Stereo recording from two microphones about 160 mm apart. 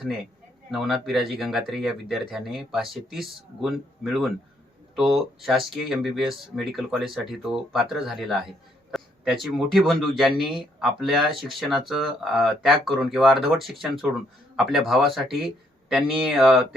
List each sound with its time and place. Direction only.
0.7 s speech: centre (ahead or behind)